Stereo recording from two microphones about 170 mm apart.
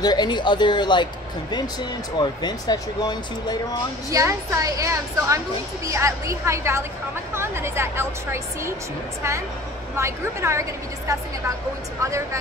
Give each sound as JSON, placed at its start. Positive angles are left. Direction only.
{"t": 0.0, "sound": "speech", "side_deg": 25}
{"t": 2.1, "sound": "speech", "side_deg": 25}
{"t": 4.1, "sound": "a woman's voice", "side_deg": -20}
{"t": 9.9, "sound": "a woman's voice", "side_deg": -15}